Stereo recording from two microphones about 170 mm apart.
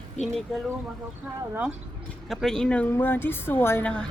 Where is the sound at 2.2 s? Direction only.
Centre (ahead or behind).